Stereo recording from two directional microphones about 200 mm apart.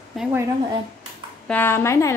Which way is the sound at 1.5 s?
10° left (ahead or behind).